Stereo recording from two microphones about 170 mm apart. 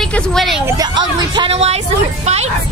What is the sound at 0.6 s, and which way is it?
Speech, 25° right (ahead or behind).